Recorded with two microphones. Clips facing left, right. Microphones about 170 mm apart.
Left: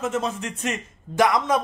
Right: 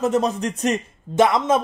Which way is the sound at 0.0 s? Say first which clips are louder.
Right 6 dB; 35° right (ahead or behind).